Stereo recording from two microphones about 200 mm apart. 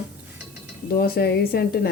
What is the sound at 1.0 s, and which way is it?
Speech, 50° left (ahead or behind).